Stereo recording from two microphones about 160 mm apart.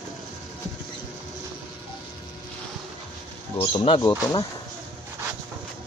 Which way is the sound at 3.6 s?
30° left (ahead or behind).